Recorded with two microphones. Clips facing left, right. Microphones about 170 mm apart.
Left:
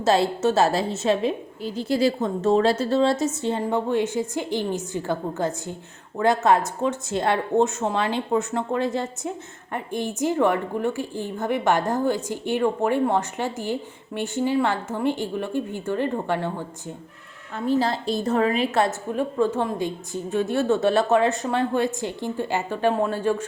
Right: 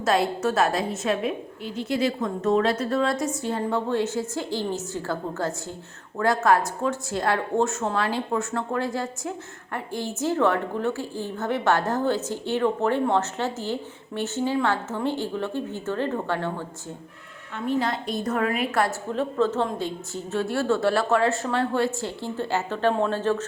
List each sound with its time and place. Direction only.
0.0 s a woman's voice: 25° left (ahead or behind)
3.6 s a woman's voice: 15° left (ahead or behind)
17.7 s a woman's voice: 35° left (ahead or behind)
19.1 s a woman's voice: 10° left (ahead or behind)